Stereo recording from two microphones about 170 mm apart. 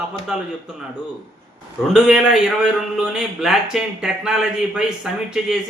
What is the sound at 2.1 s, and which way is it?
Speech, 5° right (ahead or behind).